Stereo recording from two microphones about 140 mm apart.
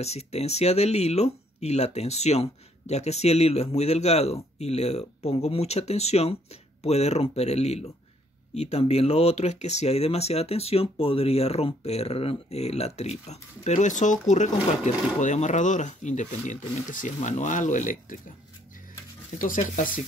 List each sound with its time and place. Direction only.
0.0 s speech: 50° left (ahead or behind); by 18.2 s 65° left (ahead or behind)
19.3 s speech: 70° left (ahead or behind)